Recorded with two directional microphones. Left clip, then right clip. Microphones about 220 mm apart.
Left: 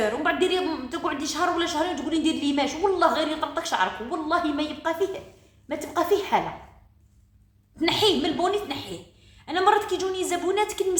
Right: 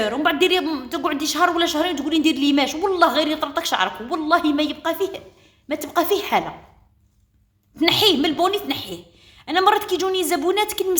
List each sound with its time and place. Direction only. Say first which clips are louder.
0.0 s a woman's voice: right 4 dB; 45° right (ahead or behind)
7.8 s a woman's voice: right 5 dB; 45° right (ahead or behind)